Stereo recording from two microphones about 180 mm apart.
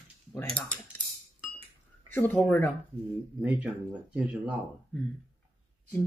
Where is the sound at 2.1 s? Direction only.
10° left (ahead or behind).